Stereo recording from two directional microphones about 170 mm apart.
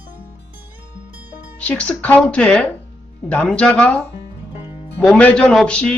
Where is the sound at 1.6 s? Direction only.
5° left (ahead or behind).